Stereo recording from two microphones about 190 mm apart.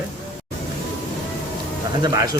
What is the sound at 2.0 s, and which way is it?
Speech, 20° right (ahead or behind).